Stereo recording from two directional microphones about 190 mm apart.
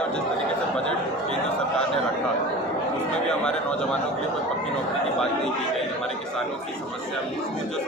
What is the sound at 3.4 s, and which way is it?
Speech, 5° left (ahead or behind).